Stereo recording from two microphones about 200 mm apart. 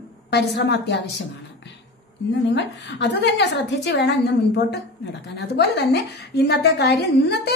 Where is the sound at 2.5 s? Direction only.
60° left (ahead or behind).